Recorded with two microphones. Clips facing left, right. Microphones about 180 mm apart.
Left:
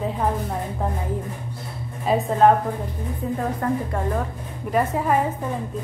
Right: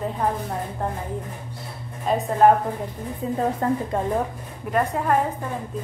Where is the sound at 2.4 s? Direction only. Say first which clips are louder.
Even; 10° right (ahead or behind).